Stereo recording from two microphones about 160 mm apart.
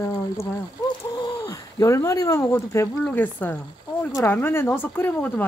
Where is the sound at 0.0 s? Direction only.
15° left (ahead or behind).